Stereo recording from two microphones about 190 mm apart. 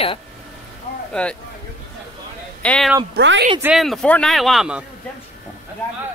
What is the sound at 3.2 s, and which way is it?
Speech, 65° right (ahead or behind).